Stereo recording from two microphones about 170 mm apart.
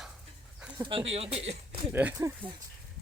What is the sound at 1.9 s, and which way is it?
Speech, 10° right (ahead or behind).